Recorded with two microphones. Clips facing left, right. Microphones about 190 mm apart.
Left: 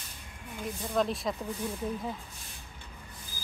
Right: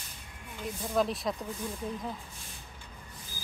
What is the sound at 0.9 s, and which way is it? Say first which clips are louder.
Speech: even; centre (ahead or behind).